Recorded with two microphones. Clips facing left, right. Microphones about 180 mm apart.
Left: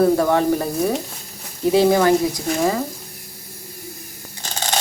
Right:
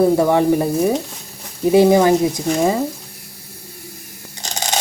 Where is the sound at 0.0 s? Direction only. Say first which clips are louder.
Right 2 dB; 15° right (ahead or behind).